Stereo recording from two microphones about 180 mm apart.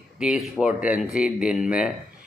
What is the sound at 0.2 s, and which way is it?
Speech, 5° right (ahead or behind).